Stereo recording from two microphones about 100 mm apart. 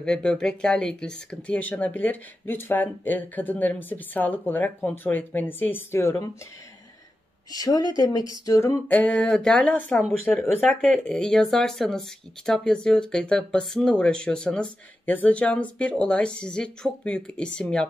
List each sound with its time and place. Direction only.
0.0 s speech: 10° left (ahead or behind); by 6.3 s 25° left (ahead or behind)
7.5 s speech: 40° left (ahead or behind)
8.9 s speech: 15° left (ahead or behind)